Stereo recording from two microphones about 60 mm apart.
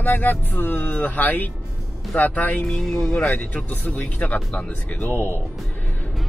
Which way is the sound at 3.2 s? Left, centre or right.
Left.